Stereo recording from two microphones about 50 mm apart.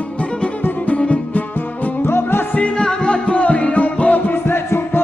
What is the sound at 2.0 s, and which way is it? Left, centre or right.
Music, left.